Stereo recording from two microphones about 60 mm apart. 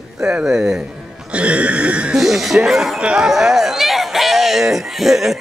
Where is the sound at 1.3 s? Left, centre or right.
Centre.